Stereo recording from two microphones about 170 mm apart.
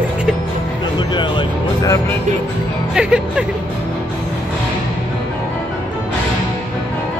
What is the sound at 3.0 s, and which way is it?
Music, 5° right (ahead or behind).